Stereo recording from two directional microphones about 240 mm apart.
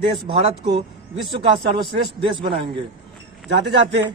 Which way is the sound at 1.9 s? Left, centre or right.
Right.